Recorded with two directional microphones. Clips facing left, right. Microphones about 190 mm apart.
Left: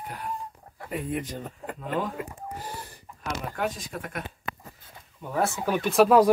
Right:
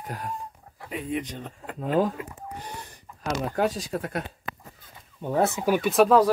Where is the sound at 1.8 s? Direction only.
40° right (ahead or behind).